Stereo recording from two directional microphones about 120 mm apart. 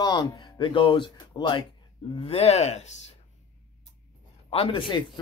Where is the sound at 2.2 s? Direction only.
55° left (ahead or behind).